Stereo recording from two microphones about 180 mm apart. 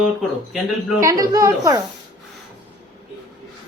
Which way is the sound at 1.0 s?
20° right (ahead or behind).